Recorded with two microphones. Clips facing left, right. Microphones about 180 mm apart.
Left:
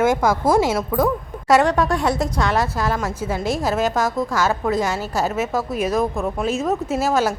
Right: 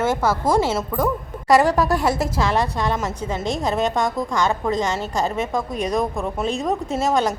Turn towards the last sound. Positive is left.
turn(degrees=5)  # may be behind; listen again after turning